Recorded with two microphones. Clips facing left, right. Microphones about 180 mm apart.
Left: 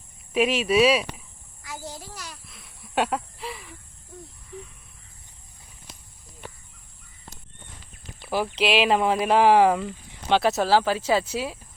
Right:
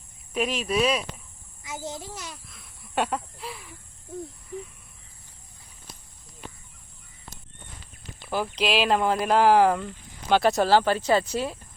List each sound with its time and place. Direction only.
0.3 s speech: 5° left (ahead or behind)
1.6 s a child's voice: 20° right (ahead or behind)
2.5 s a sound: centre (ahead or behind)
8.3 s speech: 5° left (ahead or behind)